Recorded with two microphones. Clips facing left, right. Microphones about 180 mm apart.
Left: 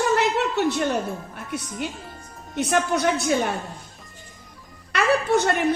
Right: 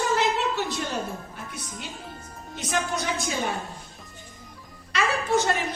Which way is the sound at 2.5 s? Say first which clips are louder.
Left 6 dB; 65° left (ahead or behind).